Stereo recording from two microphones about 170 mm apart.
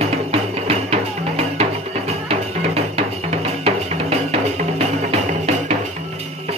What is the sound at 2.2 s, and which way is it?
Drum, 35° right (ahead or behind).